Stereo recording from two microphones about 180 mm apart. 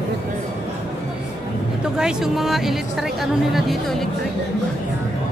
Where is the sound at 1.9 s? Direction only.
5° right (ahead or behind).